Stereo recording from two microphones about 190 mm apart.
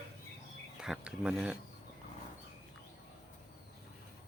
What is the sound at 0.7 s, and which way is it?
Speech, 5° right (ahead or behind).